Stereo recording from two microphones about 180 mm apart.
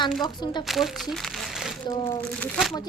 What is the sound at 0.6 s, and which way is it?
Speech, centre (ahead or behind).